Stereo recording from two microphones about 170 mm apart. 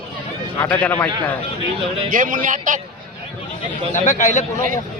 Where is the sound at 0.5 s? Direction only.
10° left (ahead or behind).